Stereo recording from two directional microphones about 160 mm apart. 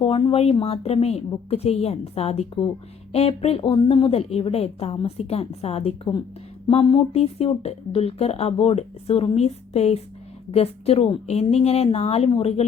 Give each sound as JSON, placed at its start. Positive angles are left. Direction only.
{"t": 0.0, "sound": "speech", "side_deg": 35}